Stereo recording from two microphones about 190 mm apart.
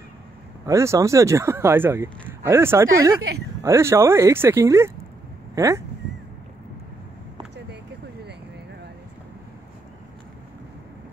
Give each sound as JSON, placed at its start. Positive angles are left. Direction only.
{"t": 0.7, "sound": "speech", "side_deg": -15}